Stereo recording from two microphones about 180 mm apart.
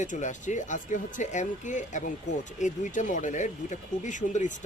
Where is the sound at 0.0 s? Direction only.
45° left (ahead or behind).